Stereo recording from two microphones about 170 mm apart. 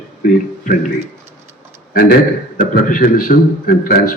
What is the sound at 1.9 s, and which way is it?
A man's voice, 60° left (ahead or behind).